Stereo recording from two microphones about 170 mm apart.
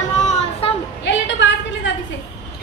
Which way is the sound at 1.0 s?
90° left.